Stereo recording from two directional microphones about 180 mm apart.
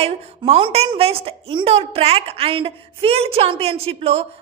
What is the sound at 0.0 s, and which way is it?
A woman's voice, 35° right (ahead or behind).